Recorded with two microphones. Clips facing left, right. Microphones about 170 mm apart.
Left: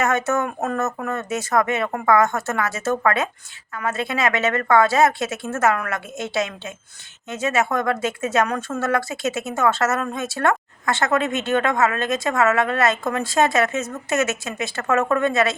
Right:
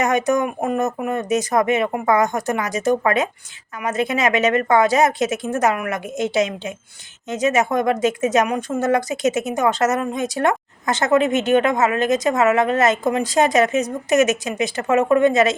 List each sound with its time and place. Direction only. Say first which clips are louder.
0.0 s speech: right 3 dB; 15° right (ahead or behind)